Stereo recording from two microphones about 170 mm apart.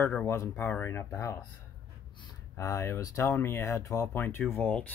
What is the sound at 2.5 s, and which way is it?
Speech, 20° left (ahead or behind).